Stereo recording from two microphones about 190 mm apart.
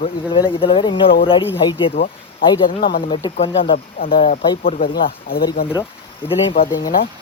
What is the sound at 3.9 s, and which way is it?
Speech, 50° left (ahead or behind).